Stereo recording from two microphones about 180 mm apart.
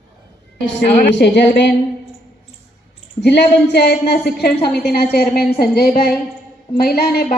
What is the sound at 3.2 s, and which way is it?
A woman's voice, 65° left (ahead or behind).